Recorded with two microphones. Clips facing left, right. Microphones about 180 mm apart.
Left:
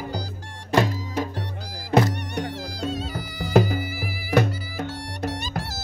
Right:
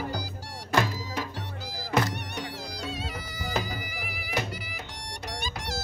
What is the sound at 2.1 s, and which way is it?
Music, 50° left (ahead or behind).